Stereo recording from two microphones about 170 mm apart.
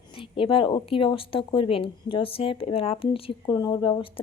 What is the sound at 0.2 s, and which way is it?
A woman's voice, 30° left (ahead or behind).